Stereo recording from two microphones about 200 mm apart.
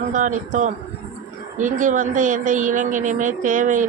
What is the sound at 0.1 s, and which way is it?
Speech, 40° right (ahead or behind).